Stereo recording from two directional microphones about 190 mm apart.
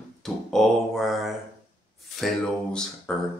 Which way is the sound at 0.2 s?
Centre (ahead or behind).